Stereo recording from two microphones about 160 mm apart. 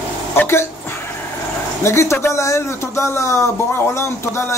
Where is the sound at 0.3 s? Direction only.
15° left (ahead or behind).